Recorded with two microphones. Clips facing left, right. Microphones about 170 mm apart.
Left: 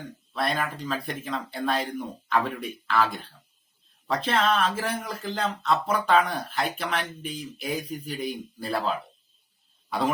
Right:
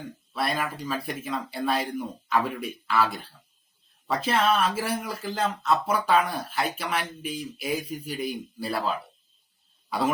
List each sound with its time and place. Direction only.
0.3 s speech: 5° right (ahead or behind)
4.3 s speech: 10° right (ahead or behind)